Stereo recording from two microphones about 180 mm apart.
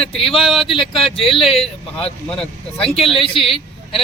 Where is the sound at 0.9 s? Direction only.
30° left (ahead or behind).